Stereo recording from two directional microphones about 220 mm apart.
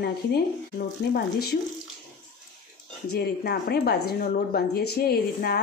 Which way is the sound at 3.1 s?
45° left (ahead or behind).